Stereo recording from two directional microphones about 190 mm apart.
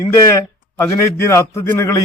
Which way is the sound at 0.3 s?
15° left (ahead or behind).